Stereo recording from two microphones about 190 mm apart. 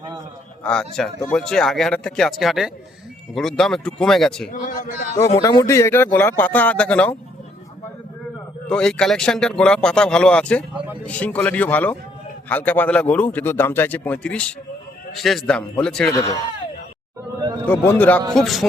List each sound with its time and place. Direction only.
0.6 s speech: 5° left (ahead or behind)
4.7 s speech: 45° left (ahead or behind)
5.1 s speech: 15° left (ahead or behind)
8.7 s speech: 5° left (ahead or behind)
16.1 s speech: 20° left (ahead or behind)
17.7 s speech: 10° left (ahead or behind)